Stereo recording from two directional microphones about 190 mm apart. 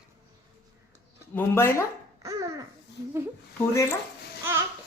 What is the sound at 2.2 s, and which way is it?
Babbling, 20° right (ahead or behind).